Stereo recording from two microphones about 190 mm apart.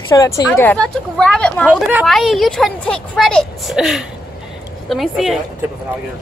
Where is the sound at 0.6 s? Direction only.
5° left (ahead or behind).